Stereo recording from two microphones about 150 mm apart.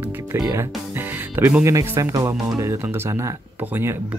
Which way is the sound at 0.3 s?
20° right (ahead or behind).